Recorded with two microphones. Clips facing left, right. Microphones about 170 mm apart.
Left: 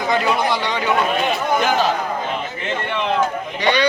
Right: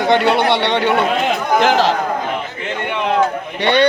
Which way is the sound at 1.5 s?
90° right.